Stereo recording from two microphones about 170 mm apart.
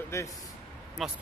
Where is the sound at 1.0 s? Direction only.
Centre (ahead or behind).